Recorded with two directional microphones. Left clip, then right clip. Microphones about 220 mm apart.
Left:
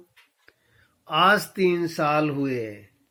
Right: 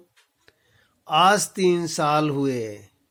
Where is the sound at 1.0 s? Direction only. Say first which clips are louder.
Right 2 dB; 45° right (ahead or behind).